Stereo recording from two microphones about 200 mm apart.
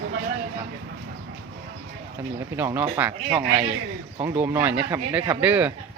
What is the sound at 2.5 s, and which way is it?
Speech, 10° right (ahead or behind).